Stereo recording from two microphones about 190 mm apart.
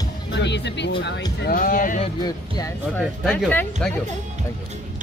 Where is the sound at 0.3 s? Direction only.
65° left (ahead or behind); by 2.0 s 45° left (ahead or behind).